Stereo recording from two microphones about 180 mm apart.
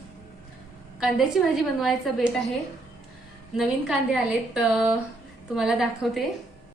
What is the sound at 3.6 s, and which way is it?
A woman's voice, centre (ahead or behind).